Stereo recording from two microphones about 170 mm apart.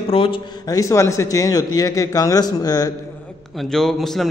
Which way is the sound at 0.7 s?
20° left (ahead or behind).